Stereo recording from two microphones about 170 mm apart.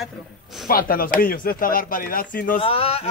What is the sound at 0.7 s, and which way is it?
Speech, 55° left (ahead or behind).